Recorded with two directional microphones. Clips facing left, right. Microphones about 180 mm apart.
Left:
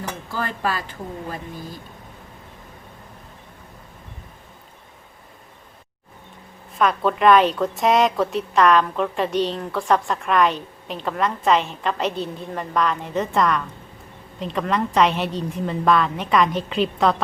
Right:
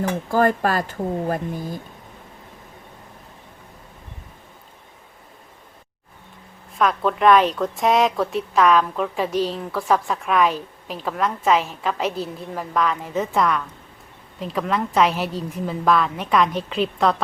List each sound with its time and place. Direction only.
0.3 s speech: 50° right (ahead or behind)
6.7 s a woman's voice: centre (ahead or behind)